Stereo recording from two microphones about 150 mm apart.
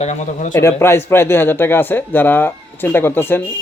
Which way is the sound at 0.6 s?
15° left (ahead or behind).